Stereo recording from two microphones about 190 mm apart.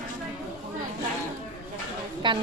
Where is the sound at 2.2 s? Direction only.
25° right (ahead or behind).